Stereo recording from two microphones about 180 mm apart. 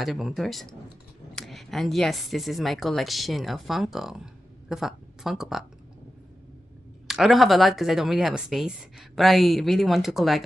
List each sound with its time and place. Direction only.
0.0 s speech: centre (ahead or behind)
7.1 s speech: centre (ahead or behind)